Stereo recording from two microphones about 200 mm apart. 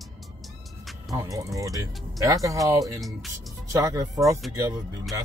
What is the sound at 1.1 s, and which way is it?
Speech, 15° right (ahead or behind).